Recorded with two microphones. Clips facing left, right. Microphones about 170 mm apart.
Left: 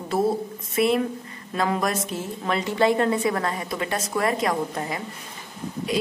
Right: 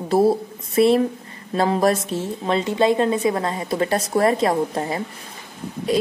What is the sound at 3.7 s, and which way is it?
Speech, 35° right (ahead or behind).